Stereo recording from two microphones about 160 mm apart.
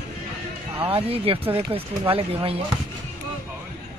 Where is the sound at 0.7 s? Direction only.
35° right (ahead or behind).